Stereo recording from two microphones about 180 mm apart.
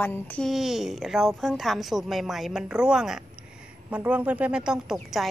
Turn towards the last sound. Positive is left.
turn(degrees=0)  # may be behind; listen again after turning